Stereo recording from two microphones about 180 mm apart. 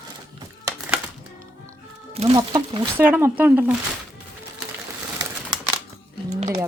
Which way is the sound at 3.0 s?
10° right (ahead or behind).